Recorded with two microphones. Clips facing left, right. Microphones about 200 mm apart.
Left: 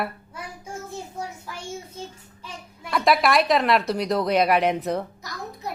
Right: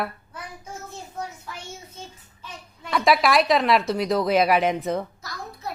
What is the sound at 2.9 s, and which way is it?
A woman's voice, centre (ahead or behind).